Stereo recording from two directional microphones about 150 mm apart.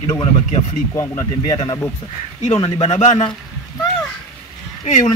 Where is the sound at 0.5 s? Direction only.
50° left (ahead or behind).